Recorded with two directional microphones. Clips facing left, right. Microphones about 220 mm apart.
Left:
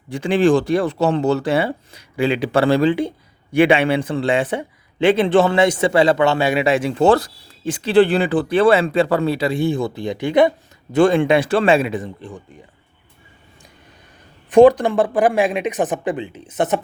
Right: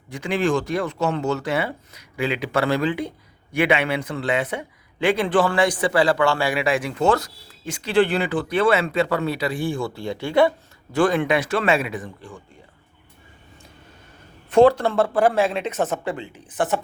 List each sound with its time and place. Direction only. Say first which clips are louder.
0.1 s a man's voice: left 7 dB; 30° left (ahead or behind)
14.5 s speech: left 4 dB; 15° left (ahead or behind)